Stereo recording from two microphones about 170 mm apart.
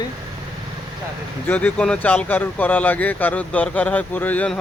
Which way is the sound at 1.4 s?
10° left (ahead or behind).